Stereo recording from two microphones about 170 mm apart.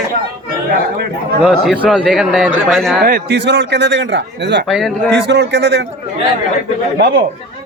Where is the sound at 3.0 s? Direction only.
70° right (ahead or behind); by 4.7 s 85° right.